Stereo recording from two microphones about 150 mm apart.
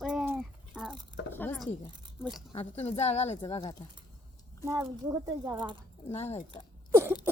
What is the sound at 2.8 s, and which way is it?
Speech, 45° left (ahead or behind).